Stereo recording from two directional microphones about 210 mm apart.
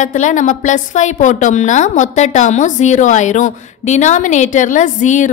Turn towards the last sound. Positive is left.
turn(degrees=35)  # may be behind; listen again after turning